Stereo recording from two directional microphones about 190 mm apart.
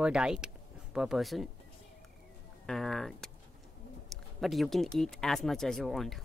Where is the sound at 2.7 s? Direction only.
Centre (ahead or behind).